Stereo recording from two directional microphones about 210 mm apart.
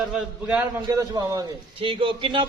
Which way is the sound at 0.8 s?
15° right (ahead or behind).